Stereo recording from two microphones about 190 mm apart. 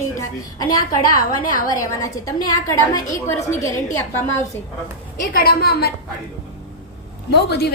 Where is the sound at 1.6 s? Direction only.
20° left (ahead or behind).